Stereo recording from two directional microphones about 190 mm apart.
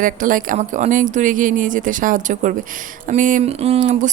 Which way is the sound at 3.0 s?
40° right (ahead or behind).